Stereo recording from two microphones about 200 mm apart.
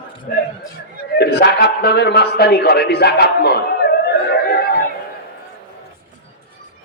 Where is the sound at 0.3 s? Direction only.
40° left (ahead or behind).